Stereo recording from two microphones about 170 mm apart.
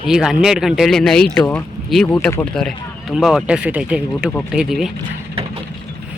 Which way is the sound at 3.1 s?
Centre (ahead or behind).